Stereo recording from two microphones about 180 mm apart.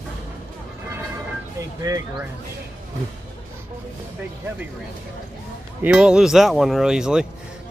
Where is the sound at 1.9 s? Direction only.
20° right (ahead or behind).